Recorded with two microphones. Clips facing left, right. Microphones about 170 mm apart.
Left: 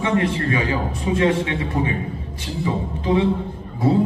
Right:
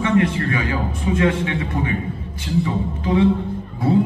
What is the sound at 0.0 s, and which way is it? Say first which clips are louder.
A man's voice: right 2 dB; 25° left (ahead or behind).